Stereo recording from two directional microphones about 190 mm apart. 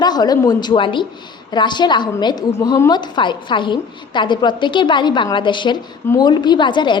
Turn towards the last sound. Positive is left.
turn(degrees=25)  # may be behind; listen again after turning